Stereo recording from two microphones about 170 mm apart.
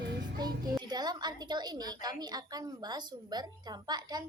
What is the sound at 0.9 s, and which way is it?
A woman's voice, 25° right (ahead or behind).